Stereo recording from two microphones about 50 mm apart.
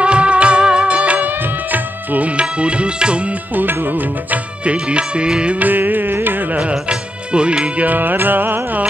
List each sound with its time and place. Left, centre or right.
0.0 s music: right
1.3 s music: right
3.5 s music: right
4.6 s music: right
5.6 s music: right
6.7 s music: centre; by 8.8 s right